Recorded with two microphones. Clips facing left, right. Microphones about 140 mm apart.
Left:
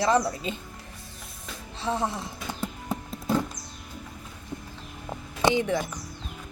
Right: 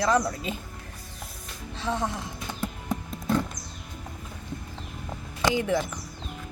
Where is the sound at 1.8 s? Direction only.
Centre (ahead or behind).